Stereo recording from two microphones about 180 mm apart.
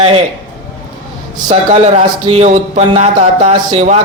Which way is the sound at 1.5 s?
35° right (ahead or behind).